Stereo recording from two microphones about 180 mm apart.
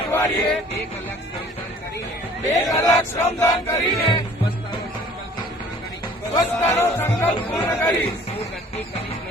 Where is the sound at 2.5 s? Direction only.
15° left (ahead or behind).